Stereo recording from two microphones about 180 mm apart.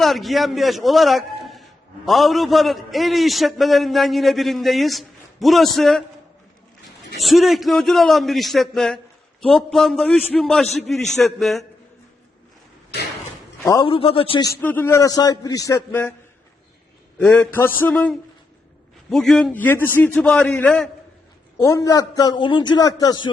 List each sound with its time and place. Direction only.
0.0 s a man's voice: centre (ahead or behind)
7.2 s a man's voice: centre (ahead or behind)
13.8 s a man's voice: 30° left (ahead or behind)
14.6 s a man's voice: 10° left (ahead or behind)
17.2 s a man's voice: 10° left (ahead or behind)
21.6 s a man's voice: 15° left (ahead or behind)